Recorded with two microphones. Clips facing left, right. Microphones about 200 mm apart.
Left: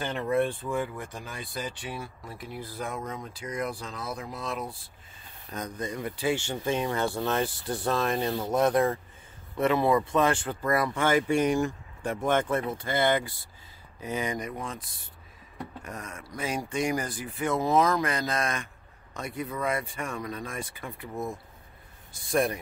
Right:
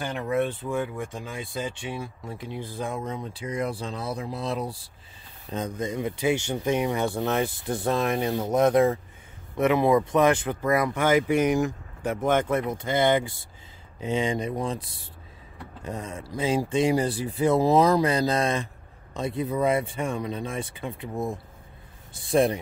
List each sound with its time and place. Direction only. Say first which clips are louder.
0.0 s speech: even; 10° right (ahead or behind); by 4.7 s 35° right (ahead or behind)
5.5 s speech: right 5 dB; 20° right (ahead or behind)